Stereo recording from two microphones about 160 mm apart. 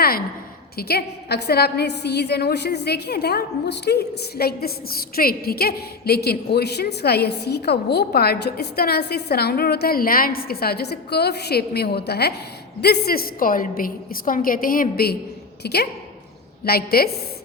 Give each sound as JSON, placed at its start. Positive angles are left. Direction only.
{"t": 0.8, "sound": "a woman's voice", "side_deg": 85}
{"t": 15.6, "sound": "a woman's voice", "side_deg": 90}
{"t": 16.6, "sound": "a woman's voice", "side_deg": 75}